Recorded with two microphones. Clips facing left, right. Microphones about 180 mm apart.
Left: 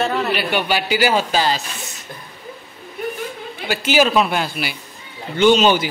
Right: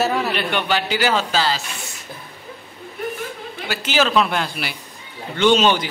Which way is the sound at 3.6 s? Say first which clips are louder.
Left 4 dB; 10° left (ahead or behind).